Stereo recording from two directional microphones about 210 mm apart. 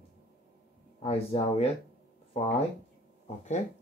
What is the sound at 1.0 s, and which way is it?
Speech, 30° left (ahead or behind).